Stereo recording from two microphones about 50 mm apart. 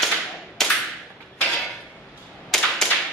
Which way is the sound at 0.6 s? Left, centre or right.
Centre.